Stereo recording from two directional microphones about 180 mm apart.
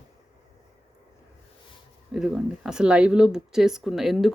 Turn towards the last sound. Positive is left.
turn(degrees=0)  # may be behind; listen again after turning